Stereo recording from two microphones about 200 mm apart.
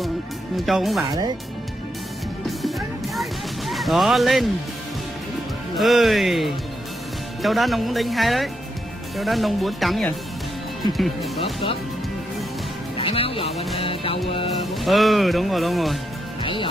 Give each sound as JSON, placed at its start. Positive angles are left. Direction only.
{"t": 0.7, "sound": "speech", "side_deg": 0}
{"t": 3.2, "sound": "music", "side_deg": 0}
{"t": 5.8, "sound": "speech", "side_deg": 0}
{"t": 12.9, "sound": "speech", "side_deg": 25}
{"t": 13.7, "sound": "music", "side_deg": 25}
{"t": 14.6, "sound": "speech", "side_deg": 0}